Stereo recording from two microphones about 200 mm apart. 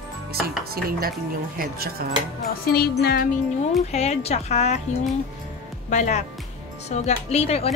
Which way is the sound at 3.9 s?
35° left (ahead or behind).